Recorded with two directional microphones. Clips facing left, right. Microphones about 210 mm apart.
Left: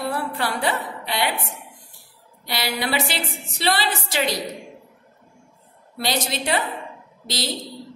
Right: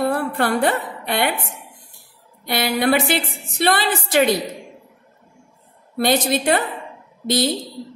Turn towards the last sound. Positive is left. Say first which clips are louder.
# right 9 dB
turn(degrees=-55)  # may be behind; listen again after turning